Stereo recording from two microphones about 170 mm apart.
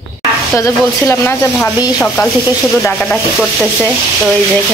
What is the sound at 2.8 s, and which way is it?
Speech, 10° left (ahead or behind).